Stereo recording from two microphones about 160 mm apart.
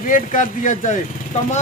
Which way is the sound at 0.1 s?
55° left (ahead or behind).